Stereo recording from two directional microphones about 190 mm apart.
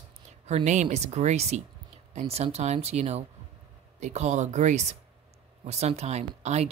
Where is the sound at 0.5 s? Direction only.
35° right (ahead or behind).